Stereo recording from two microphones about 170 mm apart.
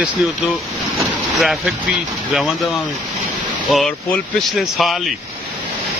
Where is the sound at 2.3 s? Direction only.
Centre (ahead or behind).